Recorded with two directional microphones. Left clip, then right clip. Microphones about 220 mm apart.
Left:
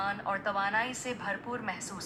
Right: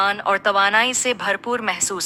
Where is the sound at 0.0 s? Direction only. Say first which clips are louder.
Right 14 dB; 45° right (ahead or behind).